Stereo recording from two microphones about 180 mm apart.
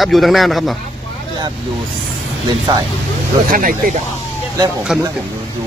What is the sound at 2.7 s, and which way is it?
Speech, 25° right (ahead or behind).